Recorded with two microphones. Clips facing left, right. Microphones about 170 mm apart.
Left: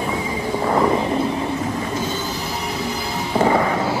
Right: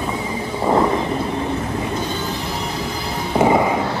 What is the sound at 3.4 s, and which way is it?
Fireworks, 15° right (ahead or behind).